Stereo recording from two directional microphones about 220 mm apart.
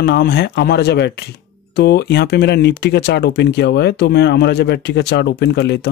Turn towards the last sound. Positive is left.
turn(degrees=50)  # may be behind; listen again after turning